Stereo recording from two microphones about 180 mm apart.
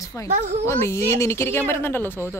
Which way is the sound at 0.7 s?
15° left (ahead or behind).